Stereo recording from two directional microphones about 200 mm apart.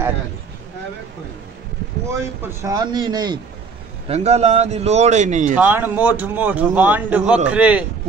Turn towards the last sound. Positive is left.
turn(degrees=-5)  # may be behind; listen again after turning